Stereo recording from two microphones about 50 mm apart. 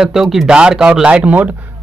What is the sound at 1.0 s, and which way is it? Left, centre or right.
Speech, right.